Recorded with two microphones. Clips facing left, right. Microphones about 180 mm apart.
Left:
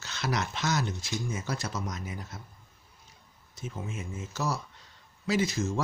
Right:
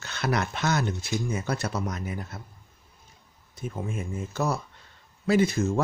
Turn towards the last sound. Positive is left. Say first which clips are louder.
# right 5 dB
turn(degrees=-55)  # may be behind; listen again after turning